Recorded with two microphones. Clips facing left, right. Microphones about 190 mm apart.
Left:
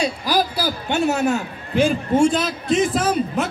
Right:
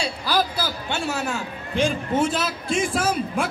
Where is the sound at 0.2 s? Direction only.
15° left (ahead or behind).